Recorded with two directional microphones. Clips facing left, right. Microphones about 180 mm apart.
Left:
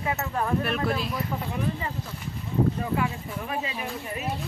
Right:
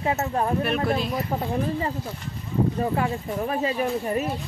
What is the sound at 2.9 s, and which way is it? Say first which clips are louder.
Speech: right 3 dB; 40° right (ahead or behind).